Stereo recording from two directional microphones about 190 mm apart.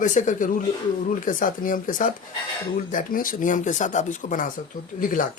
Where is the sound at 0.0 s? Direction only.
40° left (ahead or behind).